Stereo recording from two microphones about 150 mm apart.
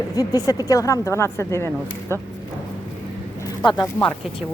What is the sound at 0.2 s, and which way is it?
A woman's voice, 25° left (ahead or behind).